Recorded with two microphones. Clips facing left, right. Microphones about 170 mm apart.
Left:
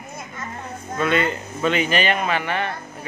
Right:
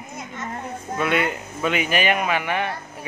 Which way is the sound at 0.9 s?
10° right (ahead or behind).